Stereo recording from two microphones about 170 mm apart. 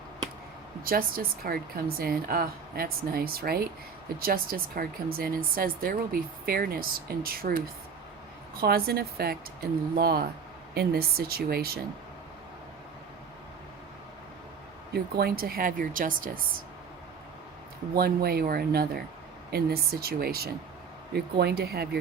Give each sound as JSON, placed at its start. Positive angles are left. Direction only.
{"t": 0.9, "sound": "speech", "side_deg": -60}
{"t": 8.6, "sound": "speech", "side_deg": -65}
{"t": 14.9, "sound": "speech", "side_deg": -65}
{"t": 17.9, "sound": "speech", "side_deg": -65}